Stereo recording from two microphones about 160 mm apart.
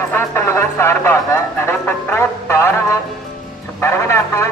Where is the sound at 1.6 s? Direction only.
15° left (ahead or behind).